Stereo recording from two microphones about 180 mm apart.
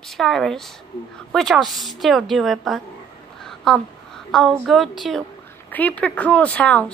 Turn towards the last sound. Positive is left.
turn(degrees=5)  # may be behind; listen again after turning